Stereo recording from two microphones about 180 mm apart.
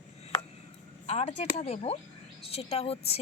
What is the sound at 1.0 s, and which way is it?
A woman's voice, 35° left (ahead or behind).